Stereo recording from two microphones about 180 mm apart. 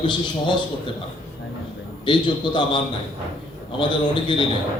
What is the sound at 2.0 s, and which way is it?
Speech, 25° left (ahead or behind).